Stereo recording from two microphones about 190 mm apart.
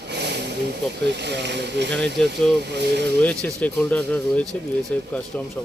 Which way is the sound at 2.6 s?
65° right (ahead or behind).